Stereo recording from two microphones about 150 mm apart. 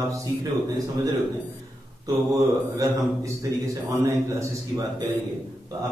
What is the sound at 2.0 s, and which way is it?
Speech, 20° right (ahead or behind).